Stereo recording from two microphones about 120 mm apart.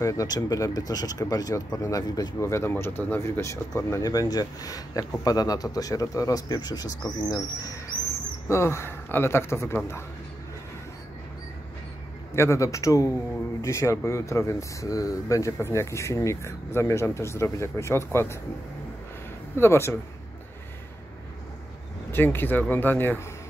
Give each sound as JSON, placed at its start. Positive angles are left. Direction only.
{"t": 0.0, "sound": "speech", "side_deg": 30}
{"t": 12.4, "sound": "speech", "side_deg": 25}
{"t": 19.5, "sound": "speech", "side_deg": 20}
{"t": 22.1, "sound": "speech", "side_deg": 20}